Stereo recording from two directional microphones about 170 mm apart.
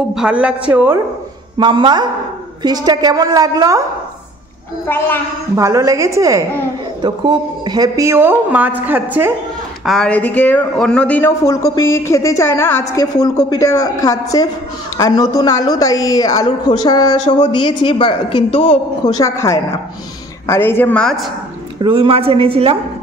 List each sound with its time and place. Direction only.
0.1 s speech: 5° right (ahead or behind)
1.6 s a woman's voice: 30° right (ahead or behind)
4.8 s speech: 10° left (ahead or behind)
5.6 s speech: 20° right (ahead or behind)
9.8 s a man's voice: 5° left (ahead or behind); by 19.1 s 35° left (ahead or behind)
19.1 s speech: 15° left (ahead or behind)
21.7 s a woman's voice: 30° right (ahead or behind)